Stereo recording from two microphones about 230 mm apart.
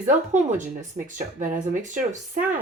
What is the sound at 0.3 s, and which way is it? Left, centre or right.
Speech, right.